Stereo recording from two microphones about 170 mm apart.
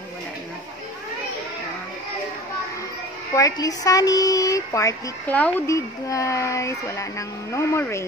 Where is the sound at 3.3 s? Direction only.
20° left (ahead or behind).